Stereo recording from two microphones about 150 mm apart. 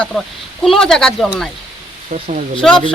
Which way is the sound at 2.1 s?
40° right (ahead or behind).